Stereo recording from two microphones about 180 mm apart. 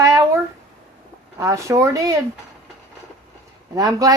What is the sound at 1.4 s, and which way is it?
Speech, 15° right (ahead or behind).